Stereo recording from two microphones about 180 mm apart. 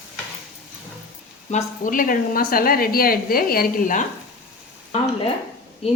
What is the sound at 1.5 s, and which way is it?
A woman's voice, 45° left (ahead or behind).